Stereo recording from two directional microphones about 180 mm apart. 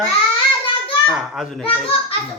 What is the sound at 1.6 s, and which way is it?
Speech, 30° left (ahead or behind).